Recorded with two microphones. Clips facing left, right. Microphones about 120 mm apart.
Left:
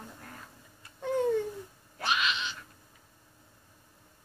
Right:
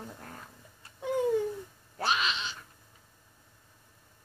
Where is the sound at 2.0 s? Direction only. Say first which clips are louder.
Right 1 dB; 35° right (ahead or behind).